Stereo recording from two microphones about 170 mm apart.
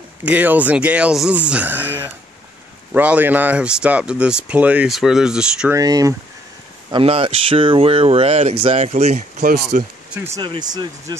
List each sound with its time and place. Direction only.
0.2 s speech: 10° right (ahead or behind)
5.7 s speech: 20° right (ahead or behind)
6.9 s speech: 35° right (ahead or behind)
9.5 s speech: 65° right (ahead or behind)
10.1 s speech: 15° right (ahead or behind)
10.4 s speech: 25° right (ahead or behind)